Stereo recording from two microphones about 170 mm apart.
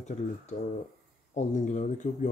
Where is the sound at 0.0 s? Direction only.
40° left (ahead or behind).